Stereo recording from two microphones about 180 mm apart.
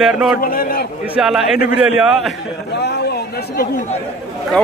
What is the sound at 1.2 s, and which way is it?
A man's voice, 5° right (ahead or behind).